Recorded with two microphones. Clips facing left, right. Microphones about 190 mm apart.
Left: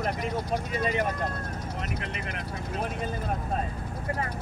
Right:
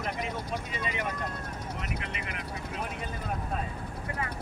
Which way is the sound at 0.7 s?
40° left (ahead or behind).